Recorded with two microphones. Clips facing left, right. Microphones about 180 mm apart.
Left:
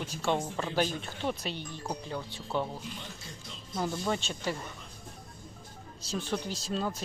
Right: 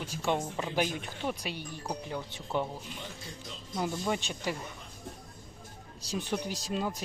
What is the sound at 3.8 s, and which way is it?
Speech, 15° right (ahead or behind).